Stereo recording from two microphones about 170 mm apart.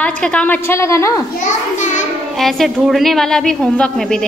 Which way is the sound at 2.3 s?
Centre (ahead or behind).